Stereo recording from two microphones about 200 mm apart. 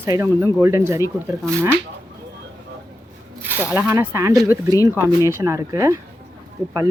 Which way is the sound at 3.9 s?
15° right (ahead or behind).